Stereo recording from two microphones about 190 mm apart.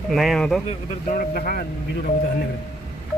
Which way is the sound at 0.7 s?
50° left (ahead or behind).